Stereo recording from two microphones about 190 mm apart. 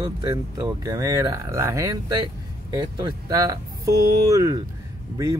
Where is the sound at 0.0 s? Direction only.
20° right (ahead or behind).